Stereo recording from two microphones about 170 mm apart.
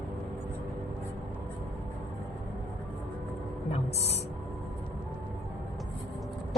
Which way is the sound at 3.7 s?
40° left (ahead or behind).